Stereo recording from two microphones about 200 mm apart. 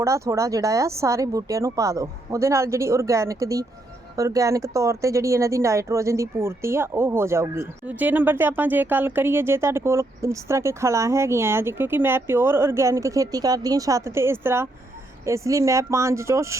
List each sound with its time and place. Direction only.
0.0 s speech: 15° right (ahead or behind)